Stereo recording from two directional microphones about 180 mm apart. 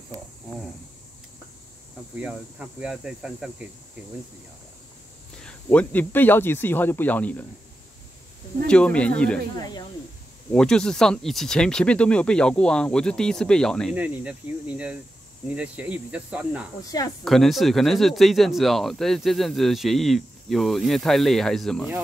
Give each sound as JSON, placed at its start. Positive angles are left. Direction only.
{"t": 2.1, "sound": "speech", "side_deg": -5}
{"t": 5.4, "sound": "speech", "side_deg": 5}
{"t": 8.6, "sound": "speech", "side_deg": 5}
{"t": 9.6, "sound": "speech", "side_deg": 25}
{"t": 10.5, "sound": "speech", "side_deg": 5}
{"t": 13.9, "sound": "cricket", "side_deg": -10}
{"t": 17.2, "sound": "speech", "side_deg": 0}